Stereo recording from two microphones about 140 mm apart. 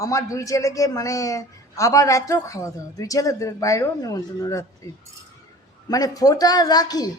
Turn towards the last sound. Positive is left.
turn(degrees=30)  # may be behind; listen again after turning